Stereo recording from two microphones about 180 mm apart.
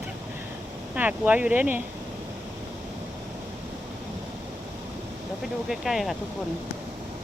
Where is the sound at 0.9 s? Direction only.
10° right (ahead or behind).